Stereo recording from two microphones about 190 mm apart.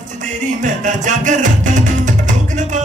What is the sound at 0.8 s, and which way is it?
Music, 40° right (ahead or behind).